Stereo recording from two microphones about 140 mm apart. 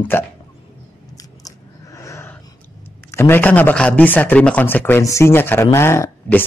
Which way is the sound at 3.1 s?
15° left (ahead or behind).